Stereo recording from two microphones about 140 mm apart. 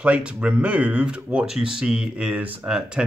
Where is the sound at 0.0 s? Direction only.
10° right (ahead or behind).